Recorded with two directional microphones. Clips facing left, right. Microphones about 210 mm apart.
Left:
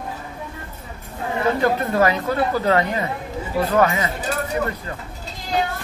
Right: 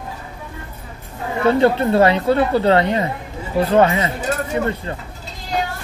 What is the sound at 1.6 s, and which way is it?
Speech, 30° right (ahead or behind).